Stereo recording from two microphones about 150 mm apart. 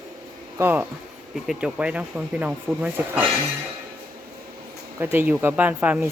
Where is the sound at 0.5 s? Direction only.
15° right (ahead or behind).